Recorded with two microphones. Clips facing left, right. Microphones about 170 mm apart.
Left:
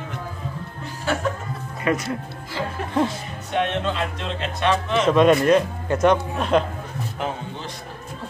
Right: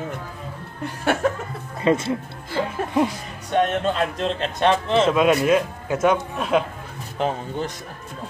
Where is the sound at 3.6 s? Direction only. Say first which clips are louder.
Right 3 dB; 45° right (ahead or behind).